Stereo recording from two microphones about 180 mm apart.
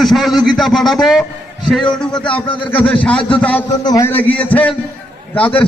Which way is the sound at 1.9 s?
25° left (ahead or behind).